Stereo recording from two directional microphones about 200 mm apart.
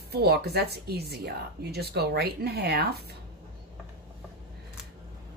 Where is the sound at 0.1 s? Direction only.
50° right (ahead or behind).